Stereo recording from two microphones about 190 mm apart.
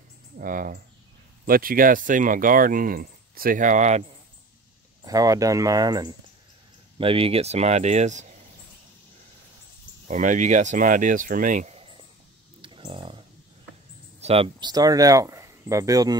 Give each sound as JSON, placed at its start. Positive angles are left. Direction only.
{"t": 0.4, "sound": "speech", "side_deg": -45}
{"t": 5.0, "sound": "speech", "side_deg": -20}
{"t": 10.0, "sound": "speech", "side_deg": -40}
{"t": 12.6, "sound": "a sound", "side_deg": -25}
{"t": 14.2, "sound": "speech", "side_deg": -30}